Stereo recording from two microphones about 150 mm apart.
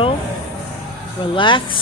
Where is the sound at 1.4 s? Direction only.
35° left (ahead or behind).